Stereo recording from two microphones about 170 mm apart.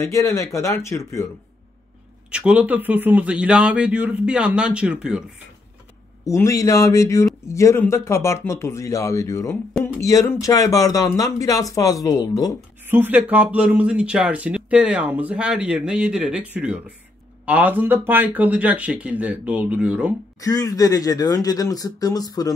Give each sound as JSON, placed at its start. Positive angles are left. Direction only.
{"t": 0.1, "sound": "speech", "side_deg": 20}
{"t": 2.3, "sound": "speech", "side_deg": -5}
{"t": 6.2, "sound": "speech", "side_deg": 20}
{"t": 12.8, "sound": "speech", "side_deg": -10}
{"t": 20.3, "sound": "speech", "side_deg": 20}